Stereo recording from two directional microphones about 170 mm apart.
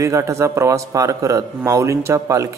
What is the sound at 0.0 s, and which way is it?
A man's voice, 20° right (ahead or behind).